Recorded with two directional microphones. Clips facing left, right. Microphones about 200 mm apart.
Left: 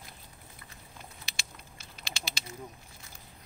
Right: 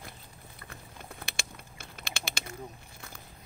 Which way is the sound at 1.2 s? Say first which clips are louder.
Right 6 dB; 55° right (ahead or behind).